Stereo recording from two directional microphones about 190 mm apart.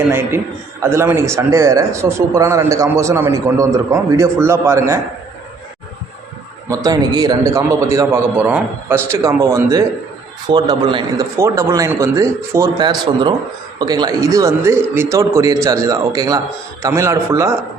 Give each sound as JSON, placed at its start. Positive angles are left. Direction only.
{"t": 0.1, "sound": "a man's voice", "side_deg": -15}
{"t": 6.7, "sound": "a man's voice", "side_deg": -20}